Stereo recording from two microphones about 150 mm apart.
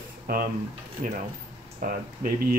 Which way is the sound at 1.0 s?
55° right (ahead or behind).